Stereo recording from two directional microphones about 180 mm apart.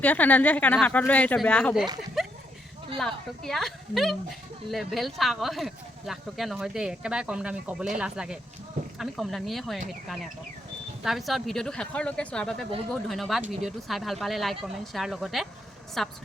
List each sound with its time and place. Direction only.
0.0 s speech: 10° left (ahead or behind)
2.2 s a sound: centre (ahead or behind)
3.0 s speech: centre (ahead or behind)
11.0 s speech: centre (ahead or behind)